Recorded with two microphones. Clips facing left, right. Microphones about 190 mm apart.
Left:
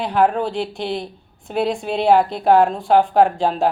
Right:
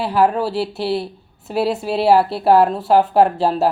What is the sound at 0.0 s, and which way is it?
A woman's voice, 5° right (ahead or behind).